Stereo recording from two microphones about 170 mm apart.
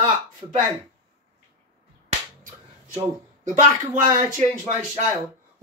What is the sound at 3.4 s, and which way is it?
Speech, 50° right (ahead or behind).